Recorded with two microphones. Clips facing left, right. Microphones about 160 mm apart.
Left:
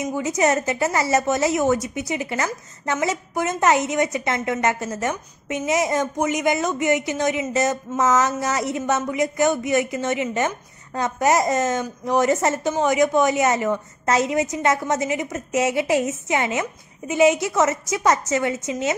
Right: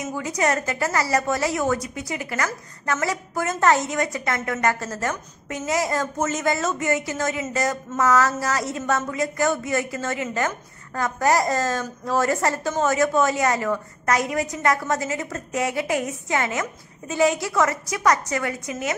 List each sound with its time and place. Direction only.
0.1 s a woman's voice: 25° left (ahead or behind)